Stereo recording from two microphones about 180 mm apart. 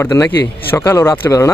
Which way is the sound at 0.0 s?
15° left (ahead or behind).